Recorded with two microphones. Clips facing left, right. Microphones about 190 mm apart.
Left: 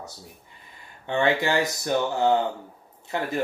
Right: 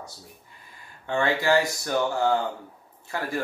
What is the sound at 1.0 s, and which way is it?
Speech, 20° left (ahead or behind).